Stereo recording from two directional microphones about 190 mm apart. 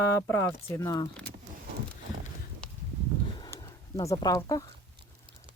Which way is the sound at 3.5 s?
15° left (ahead or behind).